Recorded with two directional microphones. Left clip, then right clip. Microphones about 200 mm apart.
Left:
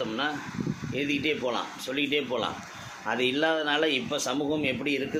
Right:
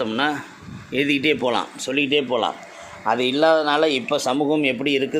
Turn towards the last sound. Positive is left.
turn(degrees=-40)  # may be behind; listen again after turning